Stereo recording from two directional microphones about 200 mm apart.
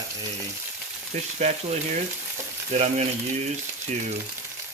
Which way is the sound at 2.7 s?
35° right (ahead or behind).